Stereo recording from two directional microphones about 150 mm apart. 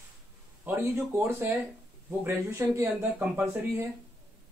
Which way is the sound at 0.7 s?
15° right (ahead or behind).